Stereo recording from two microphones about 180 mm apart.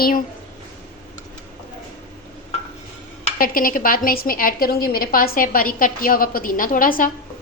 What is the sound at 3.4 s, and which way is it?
A woman's voice, 50° left (ahead or behind).